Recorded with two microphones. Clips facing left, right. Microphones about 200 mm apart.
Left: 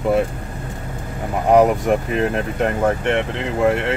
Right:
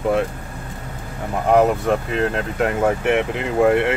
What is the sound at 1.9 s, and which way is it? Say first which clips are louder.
Speech: left 1 dB; 15° left (ahead or behind).